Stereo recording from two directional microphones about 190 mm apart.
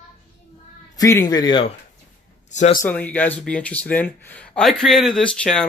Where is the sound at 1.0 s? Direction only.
15° left (ahead or behind).